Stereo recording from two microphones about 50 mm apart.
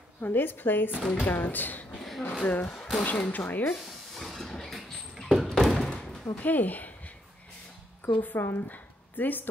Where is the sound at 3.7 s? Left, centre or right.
Centre.